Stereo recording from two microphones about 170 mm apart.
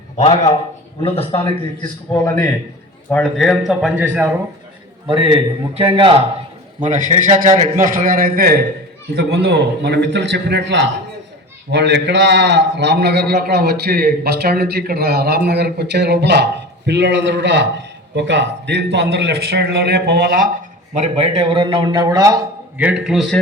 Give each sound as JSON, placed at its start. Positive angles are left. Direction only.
{"t": 0.2, "sound": "speech", "side_deg": 40}
{"t": 1.8, "sound": "a man's voice", "side_deg": 20}
{"t": 3.1, "sound": "speech", "side_deg": 5}
{"t": 5.0, "sound": "a man's voice", "side_deg": -30}
{"t": 6.8, "sound": "a man's voice", "side_deg": -45}
{"t": 20.9, "sound": "a man's voice", "side_deg": -40}
{"t": 22.8, "sound": "speech", "side_deg": -5}